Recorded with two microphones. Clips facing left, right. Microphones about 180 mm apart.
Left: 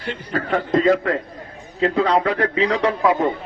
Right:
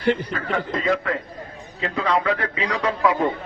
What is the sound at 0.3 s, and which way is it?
A man's voice, 40° left (ahead or behind).